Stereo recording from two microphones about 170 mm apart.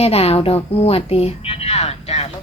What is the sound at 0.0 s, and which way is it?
Speech, 35° left (ahead or behind).